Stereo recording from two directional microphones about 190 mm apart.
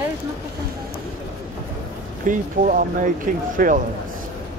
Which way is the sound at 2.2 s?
45° right (ahead or behind).